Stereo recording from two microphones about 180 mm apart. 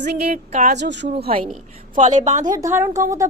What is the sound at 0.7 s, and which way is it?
Speech, 75° right (ahead or behind).